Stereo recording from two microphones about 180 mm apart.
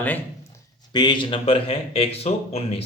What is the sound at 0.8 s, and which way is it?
Speech, 25° left (ahead or behind).